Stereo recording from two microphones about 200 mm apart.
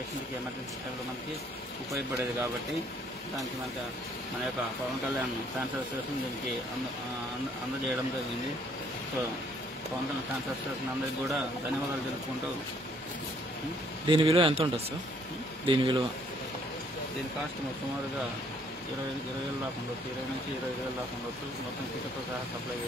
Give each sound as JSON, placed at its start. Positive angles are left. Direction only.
{"t": 14.0, "sound": "speech", "side_deg": -25}